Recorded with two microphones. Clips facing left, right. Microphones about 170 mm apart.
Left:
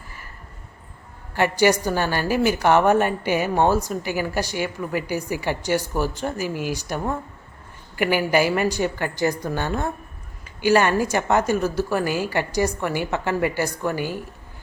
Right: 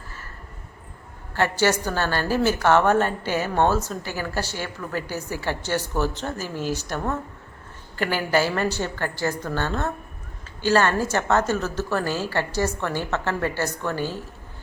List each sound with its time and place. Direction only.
1.3 s a woman's voice: 15° left (ahead or behind)